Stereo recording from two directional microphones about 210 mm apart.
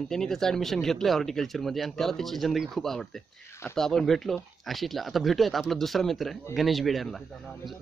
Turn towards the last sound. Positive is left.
turn(degrees=0)  # may be behind; listen again after turning